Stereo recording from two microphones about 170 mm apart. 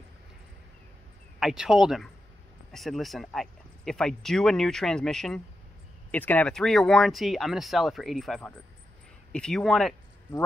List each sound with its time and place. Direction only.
1.4 s speech: 5° right (ahead or behind)